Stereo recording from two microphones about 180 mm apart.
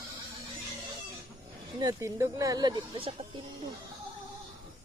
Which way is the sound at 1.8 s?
20° right (ahead or behind).